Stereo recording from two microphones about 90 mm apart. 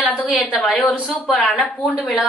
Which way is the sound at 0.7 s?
Centre (ahead or behind).